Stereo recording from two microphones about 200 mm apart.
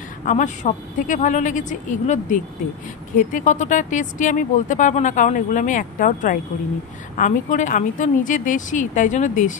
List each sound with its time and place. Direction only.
0.2 s speech: 40° left (ahead or behind)